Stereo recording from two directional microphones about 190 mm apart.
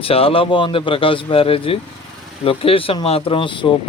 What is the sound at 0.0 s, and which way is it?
Speech, 30° left (ahead or behind).